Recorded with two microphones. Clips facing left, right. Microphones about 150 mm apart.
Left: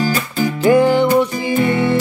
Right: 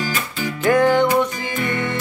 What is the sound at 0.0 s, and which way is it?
Music, 40° left (ahead or behind).